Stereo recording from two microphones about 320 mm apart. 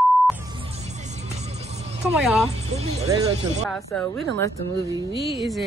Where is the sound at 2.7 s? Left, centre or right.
Centre.